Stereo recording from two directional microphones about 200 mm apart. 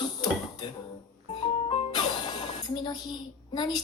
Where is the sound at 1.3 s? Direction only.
25° left (ahead or behind).